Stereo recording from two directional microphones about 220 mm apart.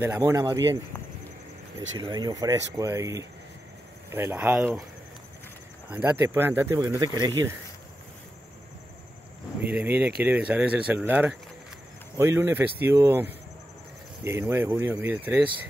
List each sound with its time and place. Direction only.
0.2 s speech: 15° right (ahead or behind)
2.0 s speech: 20° right (ahead or behind)
5.9 s speech: 10° right (ahead or behind)
9.6 s speech: 5° right (ahead or behind)
14.5 s speech: 10° right (ahead or behind)